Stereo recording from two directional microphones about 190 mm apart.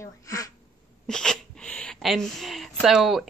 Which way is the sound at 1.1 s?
5° left (ahead or behind).